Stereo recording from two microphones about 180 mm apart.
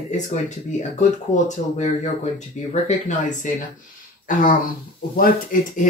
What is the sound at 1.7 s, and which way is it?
Speech, 40° left (ahead or behind).